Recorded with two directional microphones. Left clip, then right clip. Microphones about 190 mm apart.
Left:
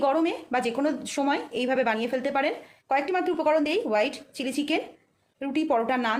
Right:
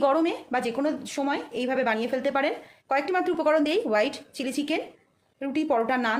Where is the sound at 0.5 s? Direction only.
5° left (ahead or behind).